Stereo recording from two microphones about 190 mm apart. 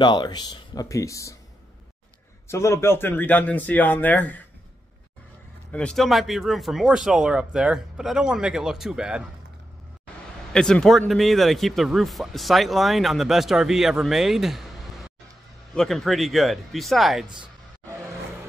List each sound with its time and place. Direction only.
0.0 s speech: 25° left (ahead or behind)
2.4 s speech: 15° left (ahead or behind)
5.7 s a man's voice: 5° left (ahead or behind)
10.5 s a man's voice: 5° left (ahead or behind)
15.7 s a man's voice: centre (ahead or behind)